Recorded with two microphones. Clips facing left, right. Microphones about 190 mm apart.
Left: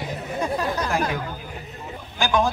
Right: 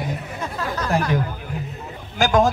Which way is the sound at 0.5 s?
20° left (ahead or behind).